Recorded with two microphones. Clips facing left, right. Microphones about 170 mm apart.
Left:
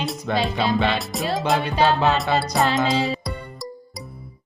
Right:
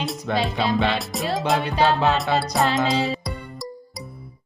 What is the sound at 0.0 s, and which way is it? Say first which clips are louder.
Music: left 1 dB; centre (ahead or behind).